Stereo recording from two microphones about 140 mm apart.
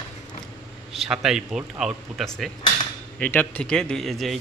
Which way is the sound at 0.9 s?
Centre (ahead or behind).